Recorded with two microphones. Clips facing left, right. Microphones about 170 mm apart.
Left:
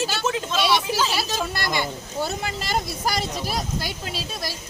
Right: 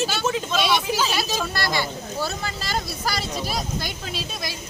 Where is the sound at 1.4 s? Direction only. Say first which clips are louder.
Even; 15° left (ahead or behind).